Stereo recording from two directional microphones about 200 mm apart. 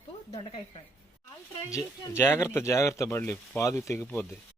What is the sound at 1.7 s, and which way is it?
Speech, 10° left (ahead or behind).